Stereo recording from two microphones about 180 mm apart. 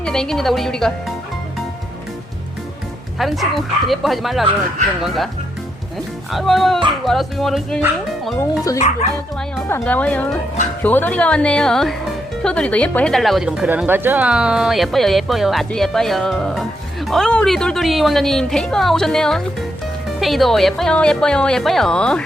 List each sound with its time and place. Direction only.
0.0 s speech: 5° left (ahead or behind)
3.2 s speech: centre (ahead or behind)
6.3 s speech: centre (ahead or behind)
8.4 s a woman's voice: 20° left (ahead or behind)